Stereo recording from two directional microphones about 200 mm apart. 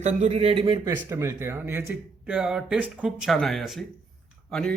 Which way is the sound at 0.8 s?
15° right (ahead or behind).